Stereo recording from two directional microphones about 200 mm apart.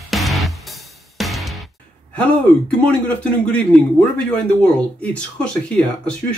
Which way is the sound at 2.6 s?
5° left (ahead or behind).